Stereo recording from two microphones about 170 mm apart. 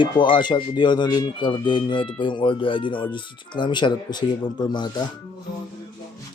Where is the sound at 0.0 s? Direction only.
30° left (ahead or behind).